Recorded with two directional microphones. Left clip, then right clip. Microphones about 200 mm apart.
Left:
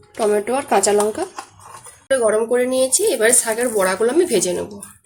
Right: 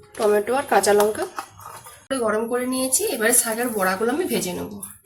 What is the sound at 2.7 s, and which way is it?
Speech, 45° left (ahead or behind).